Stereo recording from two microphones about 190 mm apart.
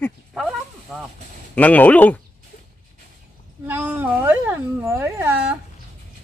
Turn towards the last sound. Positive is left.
turn(degrees=-10)  # may be behind; listen again after turning